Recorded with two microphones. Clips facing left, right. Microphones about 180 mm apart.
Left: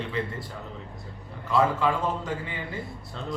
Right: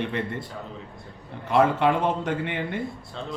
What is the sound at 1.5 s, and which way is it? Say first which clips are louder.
A man's voice: right 3 dB; 65° right (ahead or behind).